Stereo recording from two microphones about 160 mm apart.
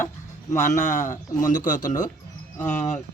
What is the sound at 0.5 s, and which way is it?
Speech, 45° left (ahead or behind).